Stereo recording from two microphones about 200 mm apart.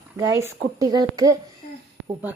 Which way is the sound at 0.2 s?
15° right (ahead or behind).